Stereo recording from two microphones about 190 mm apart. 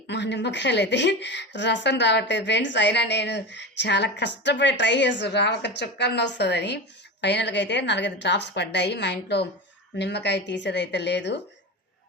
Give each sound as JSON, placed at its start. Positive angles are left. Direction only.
{"t": 0.1, "sound": "a woman's voice", "side_deg": 65}